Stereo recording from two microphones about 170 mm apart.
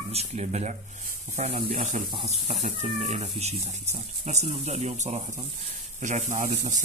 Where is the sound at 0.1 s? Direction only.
40° right (ahead or behind).